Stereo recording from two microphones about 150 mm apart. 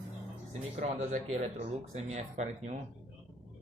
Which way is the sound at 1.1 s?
50° right (ahead or behind).